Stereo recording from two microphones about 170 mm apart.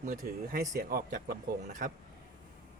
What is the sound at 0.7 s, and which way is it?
Speech, 60° right (ahead or behind).